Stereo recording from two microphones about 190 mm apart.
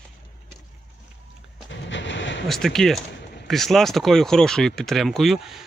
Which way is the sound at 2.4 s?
Centre (ahead or behind).